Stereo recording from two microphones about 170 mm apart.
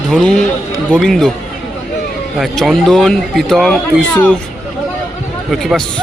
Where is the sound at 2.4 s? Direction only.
Centre (ahead or behind).